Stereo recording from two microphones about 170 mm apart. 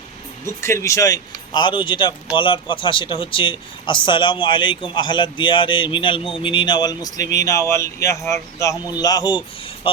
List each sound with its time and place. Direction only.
0.4 s speech: 15° left (ahead or behind); by 10.0 s 35° left (ahead or behind)